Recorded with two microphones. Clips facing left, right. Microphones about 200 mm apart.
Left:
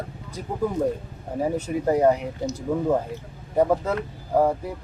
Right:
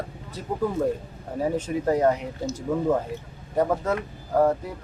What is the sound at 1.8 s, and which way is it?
Speech, 10° left (ahead or behind).